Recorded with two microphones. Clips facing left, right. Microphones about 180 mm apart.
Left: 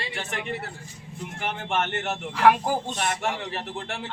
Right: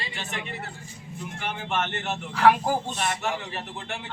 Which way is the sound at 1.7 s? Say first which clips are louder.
Left 2 dB; 55° left (ahead or behind).